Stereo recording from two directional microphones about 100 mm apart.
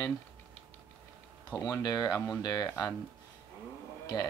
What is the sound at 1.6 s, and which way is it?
Speech, 40° left (ahead or behind).